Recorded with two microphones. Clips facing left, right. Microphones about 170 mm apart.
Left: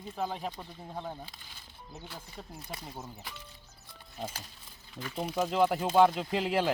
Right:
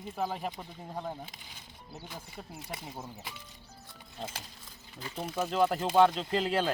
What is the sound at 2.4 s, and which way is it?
Speech, 10° right (ahead or behind).